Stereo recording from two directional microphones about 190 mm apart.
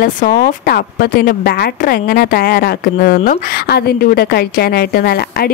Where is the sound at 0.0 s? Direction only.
50° left (ahead or behind).